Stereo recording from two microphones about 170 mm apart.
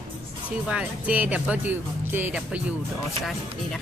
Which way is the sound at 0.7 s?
5° right (ahead or behind).